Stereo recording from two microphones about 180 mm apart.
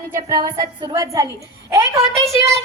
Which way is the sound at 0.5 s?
20° right (ahead or behind).